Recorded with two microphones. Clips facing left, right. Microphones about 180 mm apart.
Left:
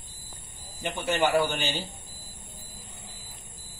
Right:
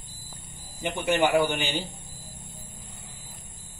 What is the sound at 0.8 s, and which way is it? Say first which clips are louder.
Speech: right 2 dB; 15° right (ahead or behind).